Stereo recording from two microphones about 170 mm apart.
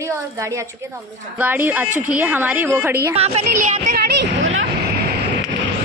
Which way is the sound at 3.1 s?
40° right (ahead or behind).